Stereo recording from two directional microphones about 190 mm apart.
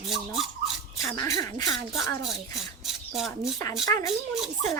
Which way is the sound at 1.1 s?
20° left (ahead or behind).